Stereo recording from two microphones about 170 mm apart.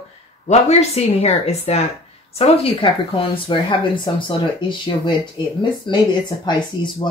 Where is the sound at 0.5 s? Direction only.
40° left (ahead or behind).